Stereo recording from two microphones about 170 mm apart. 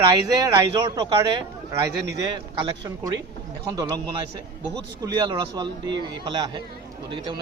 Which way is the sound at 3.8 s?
25° right (ahead or behind).